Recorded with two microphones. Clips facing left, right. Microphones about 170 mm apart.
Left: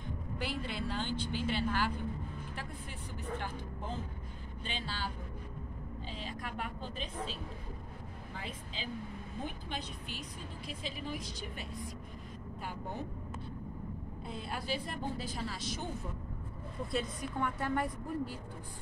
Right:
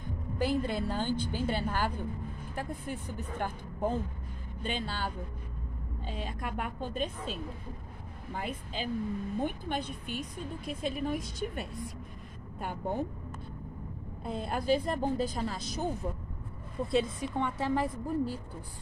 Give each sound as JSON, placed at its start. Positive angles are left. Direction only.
{"t": 0.4, "sound": "a woman's voice", "side_deg": -45}
{"t": 8.4, "sound": "a woman's voice", "side_deg": -55}
{"t": 14.2, "sound": "a woman's voice", "side_deg": -50}
{"t": 16.9, "sound": "a woman's voice", "side_deg": -25}